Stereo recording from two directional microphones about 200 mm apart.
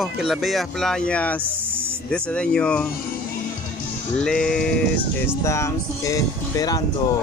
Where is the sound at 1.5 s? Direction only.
10° right (ahead or behind).